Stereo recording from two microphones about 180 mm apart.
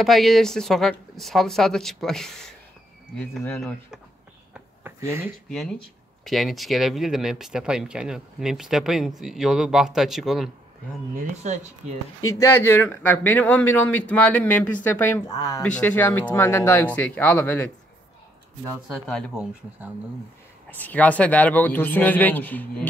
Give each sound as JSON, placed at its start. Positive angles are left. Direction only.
{"t": 0.0, "sound": "speech", "side_deg": 0}
{"t": 4.6, "sound": "a sound", "side_deg": -10}
{"t": 5.5, "sound": "speech", "side_deg": 0}
{"t": 11.1, "sound": "speech", "side_deg": -40}
{"t": 12.4, "sound": "speech", "side_deg": 15}
{"t": 15.6, "sound": "speech", "side_deg": 10}
{"t": 18.9, "sound": "speech", "side_deg": 5}
{"t": 20.7, "sound": "speech", "side_deg": 10}